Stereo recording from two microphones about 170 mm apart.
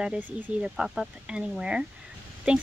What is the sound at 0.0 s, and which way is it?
Speech, 5° right (ahead or behind).